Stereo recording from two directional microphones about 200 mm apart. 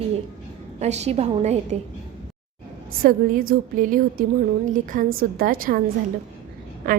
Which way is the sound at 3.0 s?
45° right (ahead or behind).